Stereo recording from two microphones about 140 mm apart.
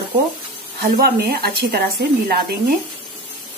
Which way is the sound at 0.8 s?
90° right.